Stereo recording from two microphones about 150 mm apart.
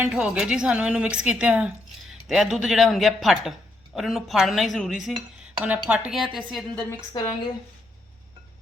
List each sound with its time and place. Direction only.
0.0 s a woman's voice: 5° right (ahead or behind)
7.1 s speech: 25° left (ahead or behind)